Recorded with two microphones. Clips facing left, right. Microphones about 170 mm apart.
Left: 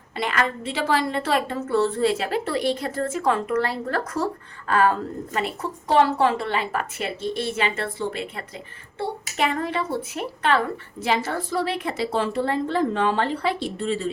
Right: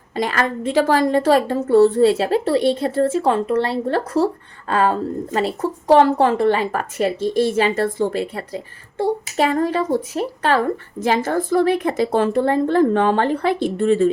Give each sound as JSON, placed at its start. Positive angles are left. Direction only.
{"t": 0.2, "sound": "a woman's voice", "side_deg": -40}